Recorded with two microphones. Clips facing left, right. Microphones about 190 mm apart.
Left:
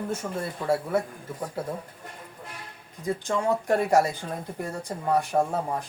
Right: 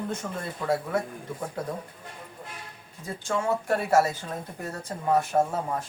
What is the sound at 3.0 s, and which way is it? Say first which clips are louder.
Speech: left 3 dB; 15° left (ahead or behind).